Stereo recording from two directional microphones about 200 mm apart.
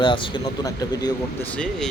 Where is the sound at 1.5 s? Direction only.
5° left (ahead or behind).